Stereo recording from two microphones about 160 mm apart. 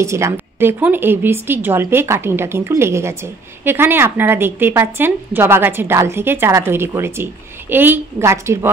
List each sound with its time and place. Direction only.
0.0 s a woman's voice: 20° right (ahead or behind)